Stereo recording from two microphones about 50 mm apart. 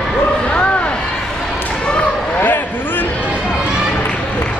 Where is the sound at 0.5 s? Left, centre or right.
Left.